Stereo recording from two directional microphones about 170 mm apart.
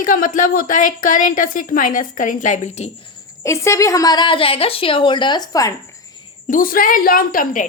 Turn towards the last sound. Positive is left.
turn(degrees=55)  # may be behind; listen again after turning